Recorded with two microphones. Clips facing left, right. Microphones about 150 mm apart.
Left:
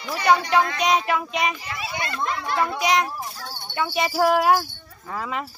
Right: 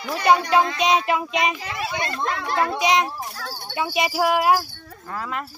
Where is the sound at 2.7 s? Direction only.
20° right (ahead or behind); by 5.5 s 5° left (ahead or behind).